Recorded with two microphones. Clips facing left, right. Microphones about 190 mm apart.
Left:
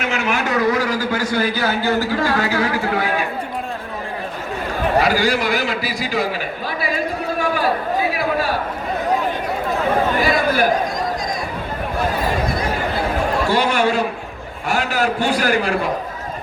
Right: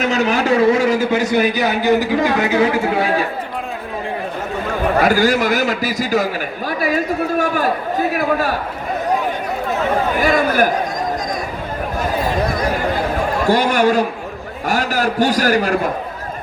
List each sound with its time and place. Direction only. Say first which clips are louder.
0.0 s a man's voice: right 5 dB; 40° right (ahead or behind)
5.0 s a man's voice: right 4 dB; 45° right (ahead or behind)
6.7 s a sound: right 5 dB; 45° right (ahead or behind)
10.2 s chatter: right 2 dB; 45° right (ahead or behind)
13.5 s a man's voice: right 5 dB; 40° right (ahead or behind)